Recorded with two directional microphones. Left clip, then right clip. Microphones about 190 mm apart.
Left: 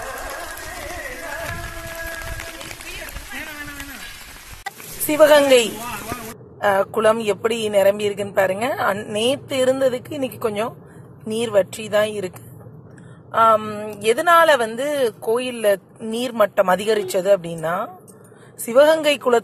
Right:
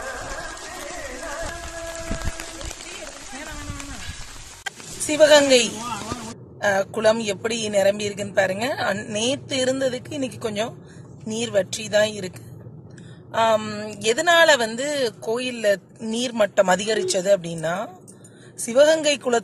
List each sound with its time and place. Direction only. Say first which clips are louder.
5.0 s a woman's voice: left 2 dB; centre (ahead or behind)
13.3 s a sound: left 4 dB; centre (ahead or behind)
13.6 s a woman's voice: left 2 dB; 10° right (ahead or behind)